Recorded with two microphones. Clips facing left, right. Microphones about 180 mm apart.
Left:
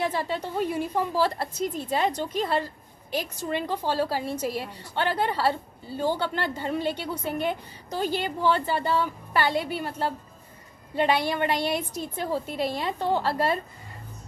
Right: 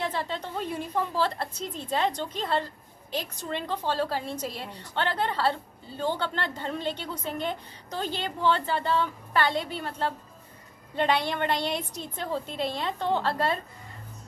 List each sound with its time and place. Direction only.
0.0 s a woman's voice: 10° left (ahead or behind)